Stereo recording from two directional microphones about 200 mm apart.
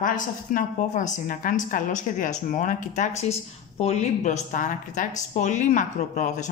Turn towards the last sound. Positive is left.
turn(degrees=40)  # may be behind; listen again after turning